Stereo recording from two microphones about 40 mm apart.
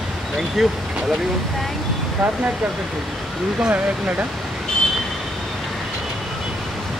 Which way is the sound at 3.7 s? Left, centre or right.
Right.